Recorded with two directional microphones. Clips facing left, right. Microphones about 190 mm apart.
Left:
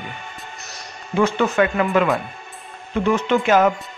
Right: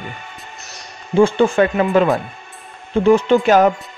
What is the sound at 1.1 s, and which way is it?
Speech, 30° right (ahead or behind).